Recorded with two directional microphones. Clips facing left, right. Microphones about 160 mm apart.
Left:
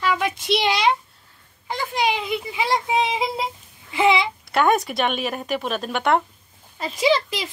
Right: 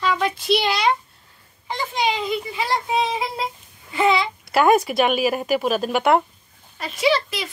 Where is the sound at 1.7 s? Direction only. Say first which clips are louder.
Even; 10° left (ahead or behind).